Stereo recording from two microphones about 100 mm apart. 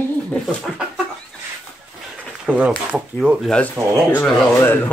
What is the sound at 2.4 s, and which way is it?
Speech, 10° right (ahead or behind).